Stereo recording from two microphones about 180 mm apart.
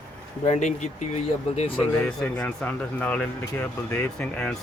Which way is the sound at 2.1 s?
5° left (ahead or behind).